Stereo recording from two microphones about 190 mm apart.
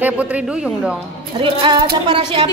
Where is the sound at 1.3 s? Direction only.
25° right (ahead or behind).